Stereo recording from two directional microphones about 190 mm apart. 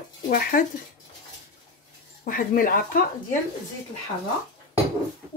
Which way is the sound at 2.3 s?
50° left (ahead or behind).